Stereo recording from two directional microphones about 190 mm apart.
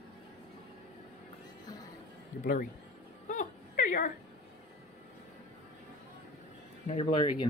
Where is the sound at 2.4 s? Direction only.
45° left (ahead or behind).